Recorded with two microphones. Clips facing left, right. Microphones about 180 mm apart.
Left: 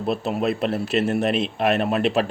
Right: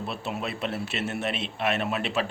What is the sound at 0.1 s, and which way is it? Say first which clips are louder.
Speech: left 13 dB; 40° left (ahead or behind).